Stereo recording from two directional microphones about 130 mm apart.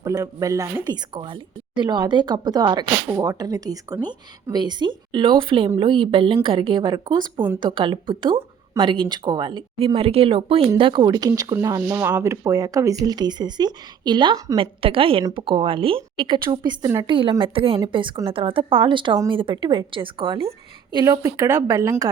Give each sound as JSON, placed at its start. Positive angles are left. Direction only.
{"t": 0.0, "sound": "speech", "side_deg": -25}
{"t": 1.1, "sound": "a woman's voice", "side_deg": -35}
{"t": 17.1, "sound": "a woman's voice", "side_deg": -40}
{"t": 20.9, "sound": "speech", "side_deg": -25}